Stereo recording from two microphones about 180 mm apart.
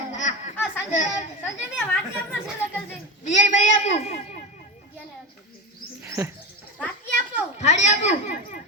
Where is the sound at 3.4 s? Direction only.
40° left (ahead or behind).